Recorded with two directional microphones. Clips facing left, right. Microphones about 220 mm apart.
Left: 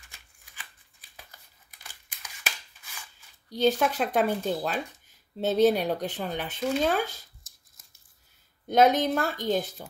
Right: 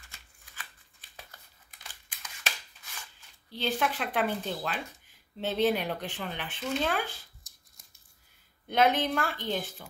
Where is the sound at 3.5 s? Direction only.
45° left (ahead or behind).